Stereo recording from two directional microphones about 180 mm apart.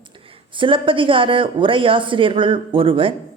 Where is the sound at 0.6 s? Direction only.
30° right (ahead or behind).